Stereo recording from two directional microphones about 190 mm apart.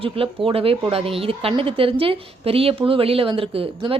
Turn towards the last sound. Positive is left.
turn(degrees=-30)  # may be behind; listen again after turning